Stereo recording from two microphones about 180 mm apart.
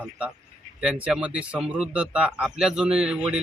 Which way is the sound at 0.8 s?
5° right (ahead or behind).